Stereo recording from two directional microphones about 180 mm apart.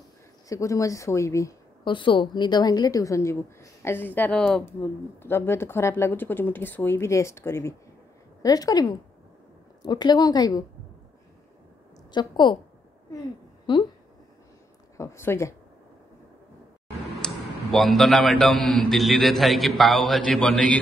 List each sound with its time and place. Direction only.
0.5 s a woman's voice: 15° left (ahead or behind)
2.0 s a woman's voice: 25° left (ahead or behind)
12.1 s a woman's voice: 25° left (ahead or behind)
13.7 s a woman's voice: 25° left (ahead or behind)
15.0 s speech: 15° left (ahead or behind)
17.2 s a man's voice: centre (ahead or behind)